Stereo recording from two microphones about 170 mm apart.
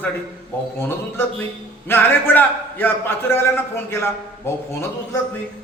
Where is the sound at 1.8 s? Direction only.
10° left (ahead or behind).